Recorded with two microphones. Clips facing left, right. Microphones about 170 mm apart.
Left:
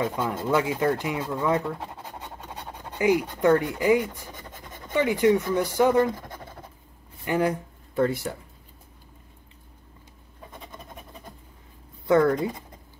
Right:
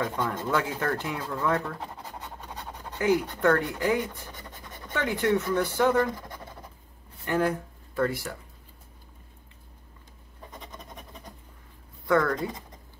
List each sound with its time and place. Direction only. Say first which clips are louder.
0.0 s speech: left 2 dB; 15° left (ahead or behind)
3.0 s speech: left 2 dB; 10° left (ahead or behind)
7.2 s a sound: left 2 dB; 15° left (ahead or behind)
8.0 s speech: left 3 dB; 25° left (ahead or behind)
12.1 s speech: left 4 dB; 20° left (ahead or behind)